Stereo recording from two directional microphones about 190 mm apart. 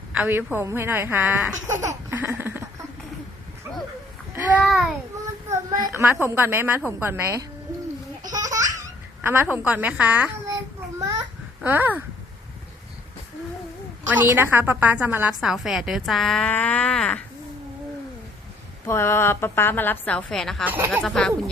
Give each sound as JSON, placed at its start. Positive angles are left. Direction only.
{"t": 0.1, "sound": "speech", "side_deg": -10}
{"t": 4.7, "sound": "a woman's voice", "side_deg": 0}
{"t": 5.9, "sound": "a woman's voice", "side_deg": -15}
{"t": 8.3, "sound": "laughter", "side_deg": -20}
{"t": 9.2, "sound": "a sound", "side_deg": -10}
{"t": 14.1, "sound": "a woman's voice", "side_deg": -10}
{"t": 18.9, "sound": "a woman's voice", "side_deg": 15}
{"t": 20.7, "sound": "a woman's voice", "side_deg": -10}
{"t": 21.0, "sound": "a woman's voice", "side_deg": 5}